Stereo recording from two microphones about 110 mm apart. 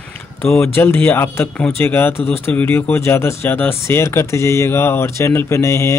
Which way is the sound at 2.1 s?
65° left (ahead or behind).